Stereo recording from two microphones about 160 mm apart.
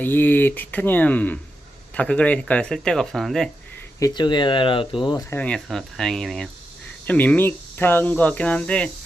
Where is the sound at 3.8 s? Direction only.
25° left (ahead or behind).